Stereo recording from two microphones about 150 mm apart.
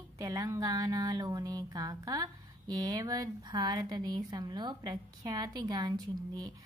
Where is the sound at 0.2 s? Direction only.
25° right (ahead or behind).